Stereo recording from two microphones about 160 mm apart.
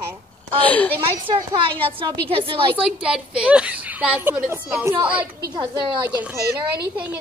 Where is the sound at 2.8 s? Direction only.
5° right (ahead or behind).